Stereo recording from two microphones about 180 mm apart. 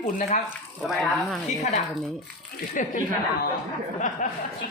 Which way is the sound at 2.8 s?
45° left (ahead or behind).